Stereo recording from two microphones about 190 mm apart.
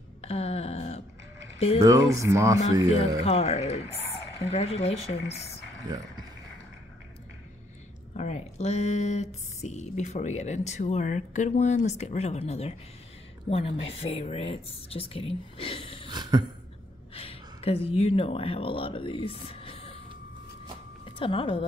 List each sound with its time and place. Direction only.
0.2 s a sound: 30° left (ahead or behind)
1.9 s speech: 15° right (ahead or behind)
3.3 s speech: 30° left (ahead or behind)
5.9 s speech: 25° right (ahead or behind)
8.1 s speech: 35° left (ahead or behind)
16.1 s a sound: 20° right (ahead or behind)
17.1 s speech: 30° left (ahead or behind)
21.2 s speech: 30° left (ahead or behind)